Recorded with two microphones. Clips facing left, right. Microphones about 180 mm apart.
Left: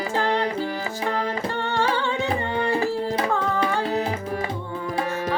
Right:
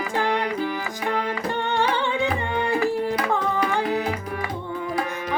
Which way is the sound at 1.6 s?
15° right (ahead or behind).